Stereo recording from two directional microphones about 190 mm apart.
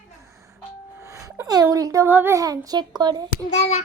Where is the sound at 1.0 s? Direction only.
15° right (ahead or behind).